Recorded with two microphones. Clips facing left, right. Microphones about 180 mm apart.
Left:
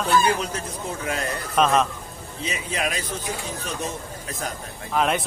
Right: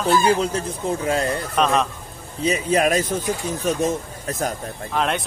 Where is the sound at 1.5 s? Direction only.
Centre (ahead or behind).